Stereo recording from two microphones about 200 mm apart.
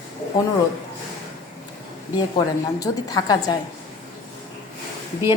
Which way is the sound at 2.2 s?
20° left (ahead or behind).